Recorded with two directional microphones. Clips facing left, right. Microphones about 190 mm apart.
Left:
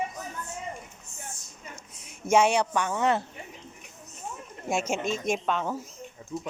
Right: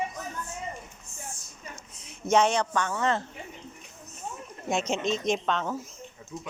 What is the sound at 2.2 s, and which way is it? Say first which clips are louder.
A woman's voice: left 1 dB; 10° left (ahead or behind).